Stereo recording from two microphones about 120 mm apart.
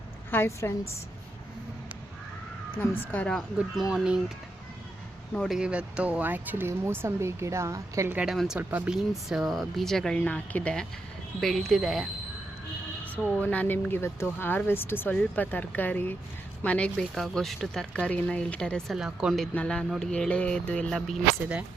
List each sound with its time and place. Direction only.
0.3 s a woman's voice: 20° left (ahead or behind)
3.0 s speech: 15° left (ahead or behind)
3.8 s speech: 5° right (ahead or behind)
5.3 s speech: 5° left (ahead or behind)
5.5 s speech: 10° right (ahead or behind); by 8.1 s 25° right (ahead or behind)
8.1 s speech: 10° right (ahead or behind)
9.0 s speech: centre (ahead or behind)
13.1 s speech: 10° left (ahead or behind)
18.9 s speech: 5° right (ahead or behind)